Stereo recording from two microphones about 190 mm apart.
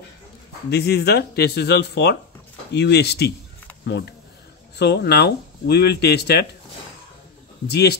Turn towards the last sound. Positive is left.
turn(degrees=60)  # may be behind; listen again after turning